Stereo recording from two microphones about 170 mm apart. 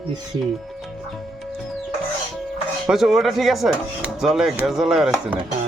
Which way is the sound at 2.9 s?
Centre (ahead or behind).